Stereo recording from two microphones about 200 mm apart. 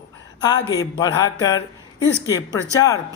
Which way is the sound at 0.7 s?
20° left (ahead or behind).